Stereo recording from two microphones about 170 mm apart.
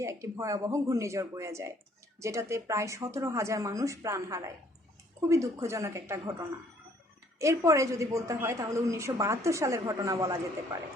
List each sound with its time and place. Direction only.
0.0 s a woman's voice: 15° right (ahead or behind)
7.3 s a woman's voice: 15° right (ahead or behind)